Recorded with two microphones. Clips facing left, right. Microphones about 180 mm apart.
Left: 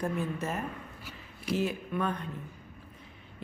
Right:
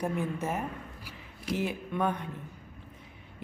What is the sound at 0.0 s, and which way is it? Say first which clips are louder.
Speech: right 1 dB; 15° right (ahead or behind).